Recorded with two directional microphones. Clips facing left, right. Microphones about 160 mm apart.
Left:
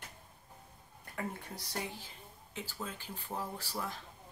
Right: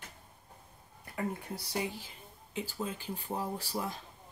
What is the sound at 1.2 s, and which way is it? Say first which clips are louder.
Speech: right 5 dB; 10° right (ahead or behind).